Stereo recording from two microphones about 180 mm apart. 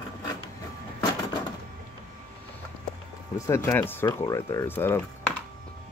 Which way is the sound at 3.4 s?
15° left (ahead or behind).